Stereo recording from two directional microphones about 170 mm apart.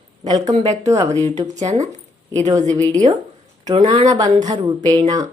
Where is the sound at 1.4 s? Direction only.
45° right (ahead or behind).